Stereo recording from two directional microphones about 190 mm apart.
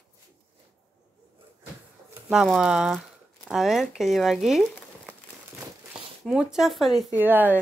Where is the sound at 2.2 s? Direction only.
Centre (ahead or behind).